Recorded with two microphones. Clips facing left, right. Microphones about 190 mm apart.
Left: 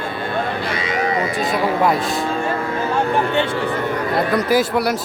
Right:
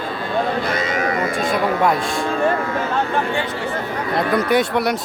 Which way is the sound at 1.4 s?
Centre (ahead or behind).